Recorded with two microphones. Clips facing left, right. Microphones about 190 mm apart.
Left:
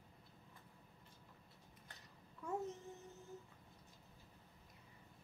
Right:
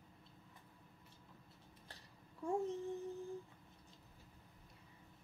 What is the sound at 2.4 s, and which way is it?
Child singing, 30° right (ahead or behind).